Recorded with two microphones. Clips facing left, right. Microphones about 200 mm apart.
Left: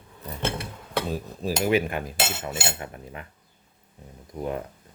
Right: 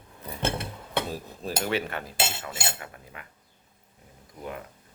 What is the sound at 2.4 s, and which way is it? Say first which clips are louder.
Speech: left 4 dB; 25° left (ahead or behind).